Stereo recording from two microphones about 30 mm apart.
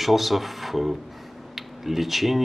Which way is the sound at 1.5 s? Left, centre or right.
Centre.